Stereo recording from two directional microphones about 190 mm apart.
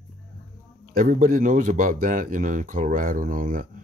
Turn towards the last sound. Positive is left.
turn(degrees=-45)  # may be behind; listen again after turning